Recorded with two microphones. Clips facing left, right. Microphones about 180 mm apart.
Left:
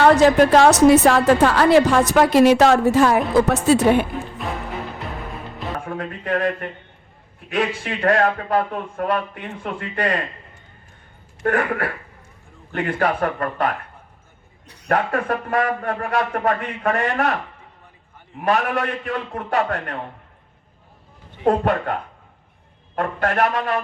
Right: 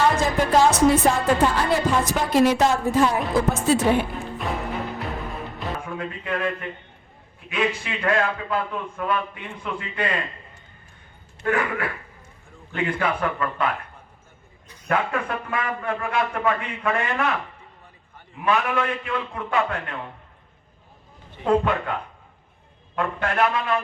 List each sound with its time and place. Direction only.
0.0 s a woman's voice: 70° left (ahead or behind)
5.8 s speech: 45° left (ahead or behind)
11.4 s a man's voice: 45° left (ahead or behind)
14.8 s speech: 40° left (ahead or behind)
21.4 s a man's voice: 45° left (ahead or behind)